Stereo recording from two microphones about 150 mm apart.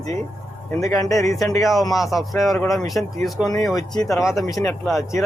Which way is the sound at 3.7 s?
25° left (ahead or behind).